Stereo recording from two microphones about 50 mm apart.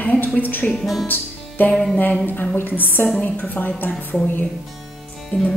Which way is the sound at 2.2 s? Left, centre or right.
Left.